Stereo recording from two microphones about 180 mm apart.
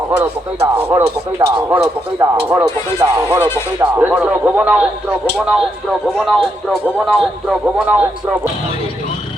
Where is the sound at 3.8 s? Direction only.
10° right (ahead or behind).